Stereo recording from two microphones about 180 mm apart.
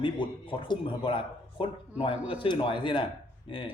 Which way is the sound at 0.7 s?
30° left (ahead or behind).